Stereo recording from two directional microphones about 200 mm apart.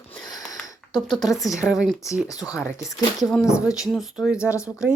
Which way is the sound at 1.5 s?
15° left (ahead or behind).